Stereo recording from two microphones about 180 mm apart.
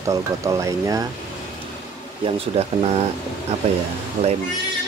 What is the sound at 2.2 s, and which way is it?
Speech, 35° right (ahead or behind).